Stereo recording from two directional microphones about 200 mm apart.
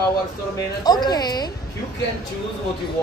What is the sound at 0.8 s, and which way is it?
Speech, 20° left (ahead or behind).